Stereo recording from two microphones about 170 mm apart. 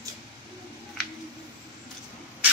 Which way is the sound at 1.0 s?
Centre (ahead or behind).